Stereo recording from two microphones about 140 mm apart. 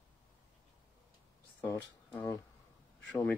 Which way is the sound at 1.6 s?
20° left (ahead or behind).